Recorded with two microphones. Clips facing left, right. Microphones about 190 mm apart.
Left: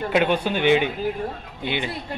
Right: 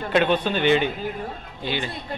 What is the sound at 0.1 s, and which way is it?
A man's voice, 10° left (ahead or behind).